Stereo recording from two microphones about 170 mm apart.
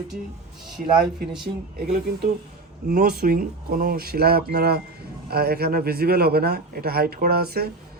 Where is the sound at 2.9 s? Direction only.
65° right (ahead or behind).